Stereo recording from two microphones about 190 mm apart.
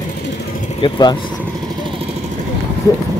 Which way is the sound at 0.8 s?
25° left (ahead or behind).